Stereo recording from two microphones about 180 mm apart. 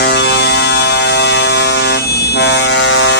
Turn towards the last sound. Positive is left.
turn(degrees=85)